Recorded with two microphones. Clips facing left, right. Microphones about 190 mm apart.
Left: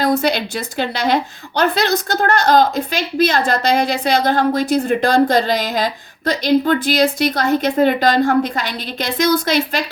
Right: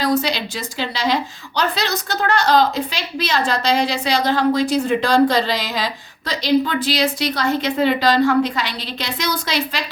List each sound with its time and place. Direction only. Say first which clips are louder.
0.0 s a woman's voice: left 3 dB; 55° left (ahead or behind)